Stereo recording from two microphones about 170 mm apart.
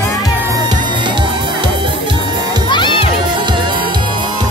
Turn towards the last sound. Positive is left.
turn(degrees=-30)  # may be behind; listen again after turning